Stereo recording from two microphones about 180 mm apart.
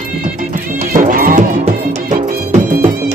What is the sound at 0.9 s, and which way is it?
Music, 50° right (ahead or behind).